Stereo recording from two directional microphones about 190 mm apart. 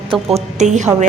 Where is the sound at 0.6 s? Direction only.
40° right (ahead or behind).